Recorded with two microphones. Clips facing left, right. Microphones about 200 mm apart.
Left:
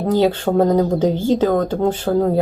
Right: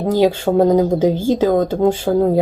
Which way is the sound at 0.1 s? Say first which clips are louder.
Right 2 dB; 10° right (ahead or behind).